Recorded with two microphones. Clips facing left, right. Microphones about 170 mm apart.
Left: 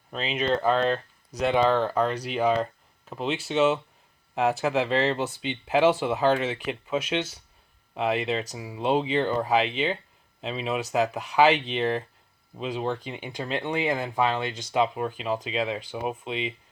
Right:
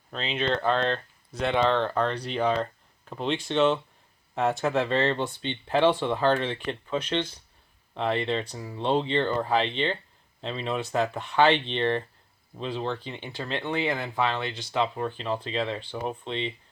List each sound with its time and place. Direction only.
0.1 s speech: 10° left (ahead or behind)